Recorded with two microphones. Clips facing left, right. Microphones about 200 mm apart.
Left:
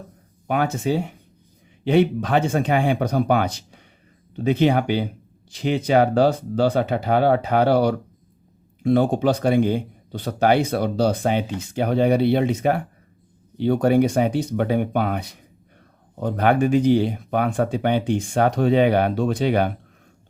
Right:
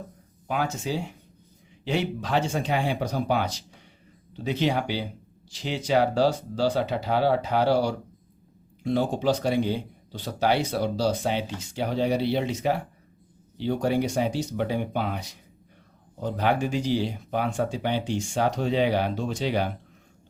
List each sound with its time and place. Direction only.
0.4 s speech: 60° left (ahead or behind)